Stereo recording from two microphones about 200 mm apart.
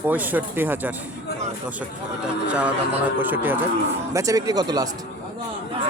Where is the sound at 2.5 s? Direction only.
5° right (ahead or behind).